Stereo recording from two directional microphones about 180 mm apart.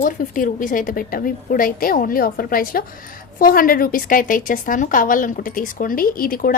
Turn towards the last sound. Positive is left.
turn(degrees=55)  # may be behind; listen again after turning